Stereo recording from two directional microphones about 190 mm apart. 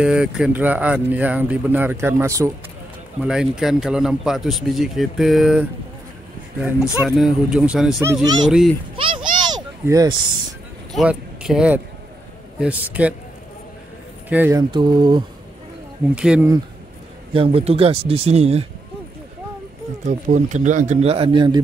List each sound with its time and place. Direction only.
0.0 s speech: 5° right (ahead or behind)
3.3 s speech: 5° right (ahead or behind)
8.0 s speech: 15° right (ahead or behind)
8.5 s speech: centre (ahead or behind)
8.9 s a sound: 25° right (ahead or behind)
10.9 s speech: centre (ahead or behind)
14.3 s speech: 10° right (ahead or behind)
14.7 s speech: 25° right (ahead or behind)
16.2 s speech: 5° right (ahead or behind)
17.3 s speech: 30° right (ahead or behind)
20.1 s speech: 40° right (ahead or behind)